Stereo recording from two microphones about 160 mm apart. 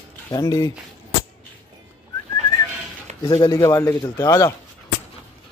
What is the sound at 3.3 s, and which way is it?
A man's voice, 25° left (ahead or behind).